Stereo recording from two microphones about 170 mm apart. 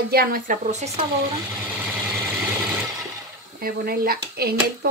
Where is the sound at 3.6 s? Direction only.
60° right (ahead or behind).